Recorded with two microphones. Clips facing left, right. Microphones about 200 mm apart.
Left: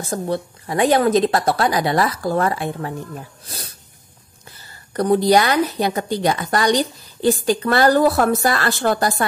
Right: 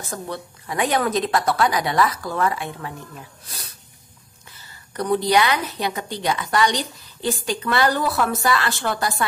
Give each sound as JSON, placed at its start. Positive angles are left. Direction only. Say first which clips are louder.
{"t": 0.1, "sound": "a woman's voice", "louder": "left 8 dB", "side_deg": 35}
{"t": 4.9, "sound": "a woman's voice", "louder": "left 4 dB", "side_deg": 40}